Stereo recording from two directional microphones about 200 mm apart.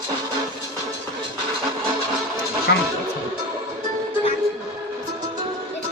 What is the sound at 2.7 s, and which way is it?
Music, 55° left (ahead or behind).